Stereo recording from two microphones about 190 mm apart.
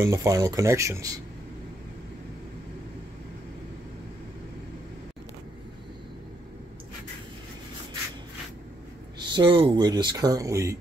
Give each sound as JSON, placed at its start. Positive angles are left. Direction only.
{"t": 0.0, "sound": "speech", "side_deg": -15}
{"t": 9.2, "sound": "speech", "side_deg": -25}